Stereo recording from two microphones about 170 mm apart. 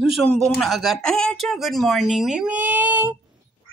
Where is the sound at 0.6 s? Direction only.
Centre (ahead or behind).